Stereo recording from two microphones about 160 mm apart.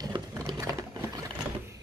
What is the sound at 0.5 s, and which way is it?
Typing, 20° right (ahead or behind).